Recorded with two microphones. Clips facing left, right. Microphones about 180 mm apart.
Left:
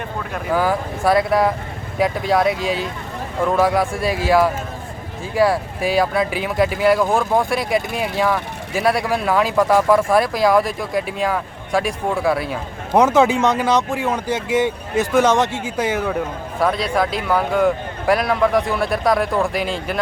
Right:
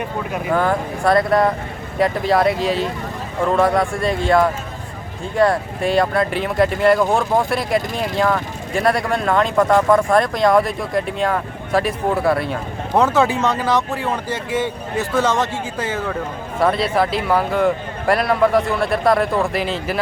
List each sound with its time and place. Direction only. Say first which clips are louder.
0.5 s speech: even; 5° left (ahead or behind)
12.9 s speech: left 2 dB; 15° left (ahead or behind)
16.6 s speech: right 2 dB; centre (ahead or behind)